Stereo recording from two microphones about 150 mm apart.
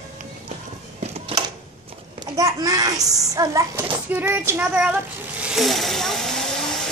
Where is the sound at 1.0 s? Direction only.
40° right (ahead or behind).